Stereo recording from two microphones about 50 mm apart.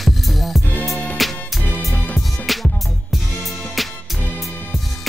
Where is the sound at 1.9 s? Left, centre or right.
Left.